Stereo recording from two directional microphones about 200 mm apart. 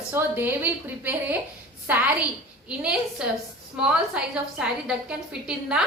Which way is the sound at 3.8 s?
5° right (ahead or behind).